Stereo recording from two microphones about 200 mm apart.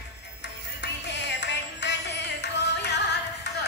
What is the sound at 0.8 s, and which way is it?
Music, 60° left (ahead or behind).